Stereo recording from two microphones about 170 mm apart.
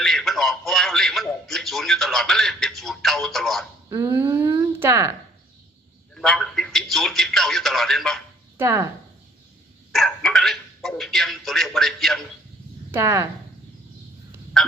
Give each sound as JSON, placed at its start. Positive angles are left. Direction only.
{"t": 0.0, "sound": "a man's voice", "side_deg": 0}
{"t": 3.8, "sound": "speech", "side_deg": -15}
{"t": 6.1, "sound": "a man's voice", "side_deg": 0}
{"t": 8.5, "sound": "speech", "side_deg": -15}
{"t": 9.9, "sound": "speech", "side_deg": 0}
{"t": 12.9, "sound": "speech", "side_deg": -15}